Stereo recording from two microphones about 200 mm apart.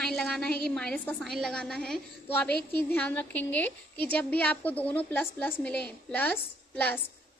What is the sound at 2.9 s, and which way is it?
A woman's voice, 10° left (ahead or behind).